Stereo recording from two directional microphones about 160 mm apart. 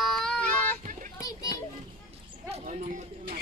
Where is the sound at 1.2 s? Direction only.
25° left (ahead or behind).